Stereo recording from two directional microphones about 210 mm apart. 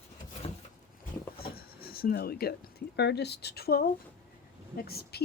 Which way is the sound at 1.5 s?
45° left (ahead or behind).